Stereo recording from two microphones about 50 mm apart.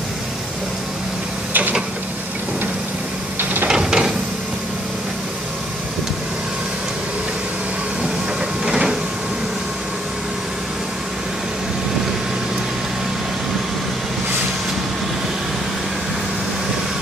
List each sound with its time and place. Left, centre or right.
1.5 s mechanisms: right
3.6 s a sound: centre
8.6 s printer: centre